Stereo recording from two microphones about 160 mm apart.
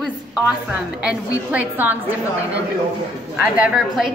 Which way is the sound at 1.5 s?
10° right (ahead or behind).